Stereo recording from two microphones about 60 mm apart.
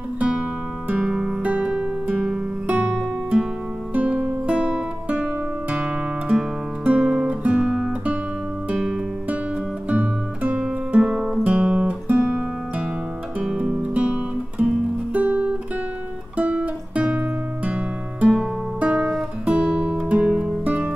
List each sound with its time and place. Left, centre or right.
0.2 s music: centre
1.4 s music: right
2.1 s music: centre
2.6 s music: right; by 9.0 s centre
9.8 s music: right
11.0 s music: centre
11.4 s guitar: centre
13.5 s music: centre
15.1 s guitar: right
19.4 s music: right